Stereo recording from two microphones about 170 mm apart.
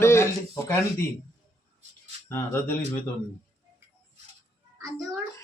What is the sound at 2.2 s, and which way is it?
Speech, 15° left (ahead or behind).